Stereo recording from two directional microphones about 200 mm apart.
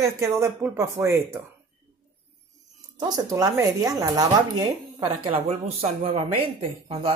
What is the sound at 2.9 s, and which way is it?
Speech, 20° right (ahead or behind).